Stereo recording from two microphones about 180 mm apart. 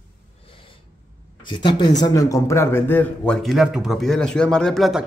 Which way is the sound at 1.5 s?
25° left (ahead or behind).